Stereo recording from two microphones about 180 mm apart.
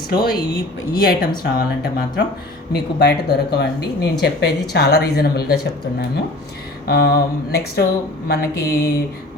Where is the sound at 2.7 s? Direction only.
65° left (ahead or behind).